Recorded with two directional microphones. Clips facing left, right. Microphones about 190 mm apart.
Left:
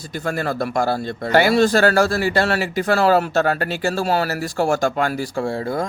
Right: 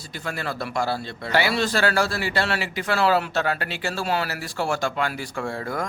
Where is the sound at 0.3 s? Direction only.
45° left (ahead or behind).